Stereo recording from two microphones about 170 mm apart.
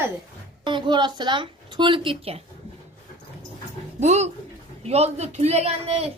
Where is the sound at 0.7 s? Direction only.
30° right (ahead or behind).